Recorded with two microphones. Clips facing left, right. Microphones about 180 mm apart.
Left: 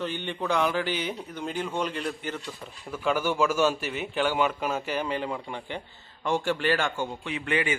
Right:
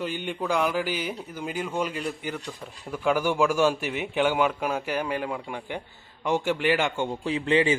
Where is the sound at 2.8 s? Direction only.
10° right (ahead or behind).